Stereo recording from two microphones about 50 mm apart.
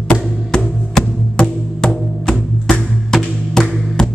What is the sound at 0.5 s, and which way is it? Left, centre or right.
Music, centre.